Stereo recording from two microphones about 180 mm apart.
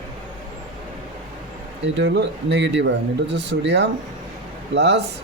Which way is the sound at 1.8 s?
75° right (ahead or behind).